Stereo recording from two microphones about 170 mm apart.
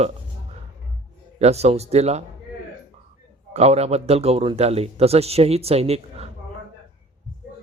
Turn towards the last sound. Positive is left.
turn(degrees=-35)  # may be behind; listen again after turning